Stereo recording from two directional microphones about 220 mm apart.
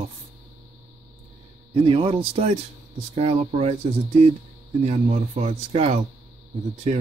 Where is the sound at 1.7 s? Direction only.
20° right (ahead or behind).